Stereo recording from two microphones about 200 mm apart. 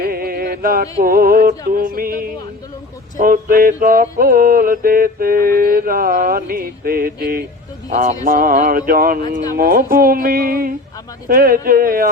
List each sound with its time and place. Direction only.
0.0 s music: 50° right (ahead or behind)
1.0 s mantra: 45° right (ahead or behind)